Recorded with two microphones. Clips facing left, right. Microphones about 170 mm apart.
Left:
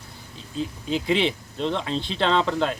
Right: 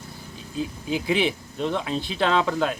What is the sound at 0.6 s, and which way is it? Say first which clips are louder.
Speech: even; 10° right (ahead or behind).